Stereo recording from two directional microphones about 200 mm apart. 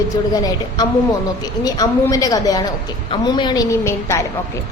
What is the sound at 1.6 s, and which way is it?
A woman's voice, 20° left (ahead or behind).